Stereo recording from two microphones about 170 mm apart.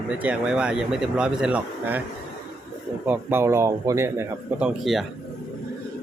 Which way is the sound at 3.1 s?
15° right (ahead or behind).